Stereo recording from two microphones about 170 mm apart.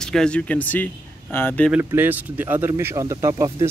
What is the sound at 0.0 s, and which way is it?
Speech, 5° left (ahead or behind).